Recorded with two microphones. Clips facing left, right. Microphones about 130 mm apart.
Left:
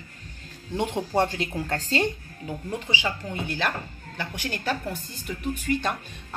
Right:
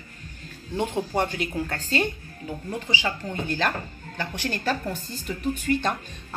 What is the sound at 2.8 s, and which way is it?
Speech, 10° left (ahead or behind).